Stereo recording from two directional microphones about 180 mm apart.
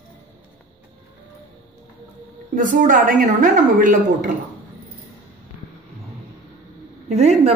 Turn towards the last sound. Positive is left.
turn(degrees=-40)  # may be behind; listen again after turning